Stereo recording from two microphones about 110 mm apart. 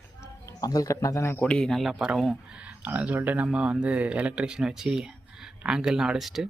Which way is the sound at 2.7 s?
15° right (ahead or behind).